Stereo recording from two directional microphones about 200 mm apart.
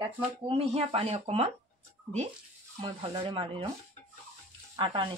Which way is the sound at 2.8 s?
25° right (ahead or behind).